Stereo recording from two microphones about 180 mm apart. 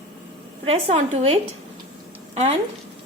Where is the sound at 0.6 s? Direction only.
30° right (ahead or behind).